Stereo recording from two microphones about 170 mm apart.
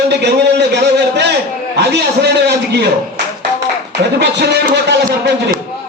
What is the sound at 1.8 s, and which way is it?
A man's voice, 80° right.